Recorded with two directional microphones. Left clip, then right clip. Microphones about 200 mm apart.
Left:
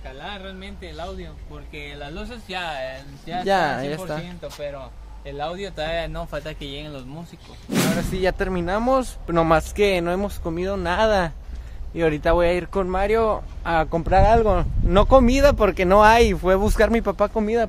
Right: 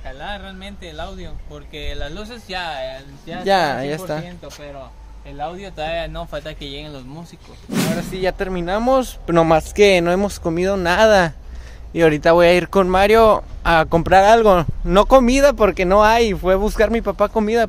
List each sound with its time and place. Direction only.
0.2 s speech: 60° right (ahead or behind)
1.8 s speech: 30° right (ahead or behind); by 4.2 s 10° right (ahead or behind)
5.4 s speech: 40° left (ahead or behind)
5.8 s speech: 15° left (ahead or behind); by 7.0 s centre (ahead or behind)
8.0 s speech: centre (ahead or behind); by 9.7 s 20° right (ahead or behind)
9.8 s speech: 35° right (ahead or behind)
14.9 s speech: 20° right (ahead or behind); by 17.3 s centre (ahead or behind)
17.3 s speech: 15° right (ahead or behind)